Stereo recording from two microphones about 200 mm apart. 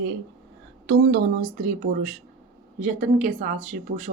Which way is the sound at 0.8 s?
65° right (ahead or behind).